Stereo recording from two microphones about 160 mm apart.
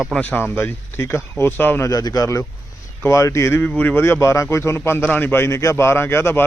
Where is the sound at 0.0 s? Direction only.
5° left (ahead or behind).